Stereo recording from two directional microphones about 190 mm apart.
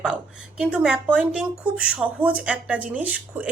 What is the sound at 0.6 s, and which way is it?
Speech, 5° right (ahead or behind).